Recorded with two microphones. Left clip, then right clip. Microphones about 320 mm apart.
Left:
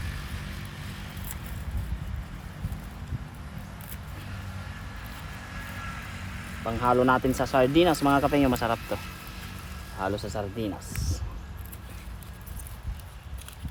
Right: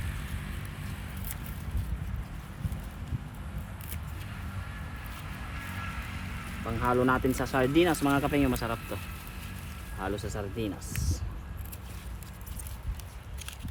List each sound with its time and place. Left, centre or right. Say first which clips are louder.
5.5 s vehicle: left 1 dB; left
6.8 s speech: left 4 dB; centre
10.0 s speech: left 5 dB; centre